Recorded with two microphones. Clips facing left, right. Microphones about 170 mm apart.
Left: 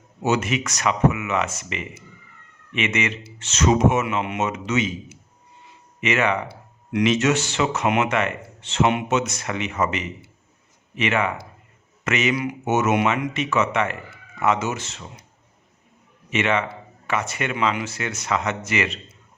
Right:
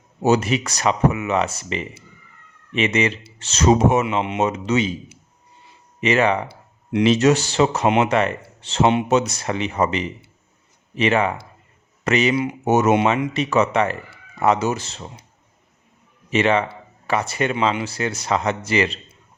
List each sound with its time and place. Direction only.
0.2 s speech: 35° right (ahead or behind)
16.3 s speech: 35° right (ahead or behind)